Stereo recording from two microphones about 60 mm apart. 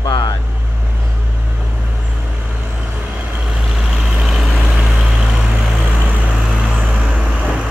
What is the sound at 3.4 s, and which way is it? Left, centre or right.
Vehicle, centre.